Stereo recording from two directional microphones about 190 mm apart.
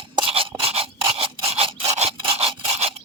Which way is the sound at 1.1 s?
30° right (ahead or behind).